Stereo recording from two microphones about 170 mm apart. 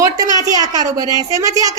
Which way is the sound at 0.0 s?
20° right (ahead or behind).